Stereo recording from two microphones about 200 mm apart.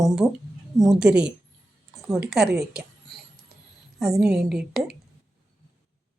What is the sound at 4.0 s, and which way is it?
Speech, centre (ahead or behind).